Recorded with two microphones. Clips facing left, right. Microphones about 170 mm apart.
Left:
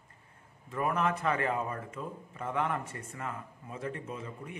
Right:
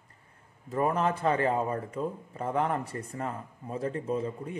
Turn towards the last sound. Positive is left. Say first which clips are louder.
# right 9 dB
turn(degrees=-35)  # may be behind; listen again after turning